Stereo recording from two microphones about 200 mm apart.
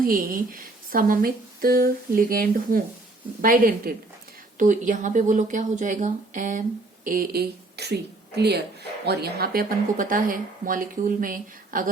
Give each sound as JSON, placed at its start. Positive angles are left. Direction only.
{"t": 0.0, "sound": "speech", "side_deg": -45}